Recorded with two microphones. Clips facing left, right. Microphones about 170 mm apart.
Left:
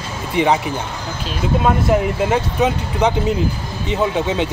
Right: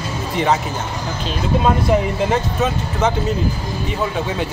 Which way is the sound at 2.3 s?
15° left (ahead or behind).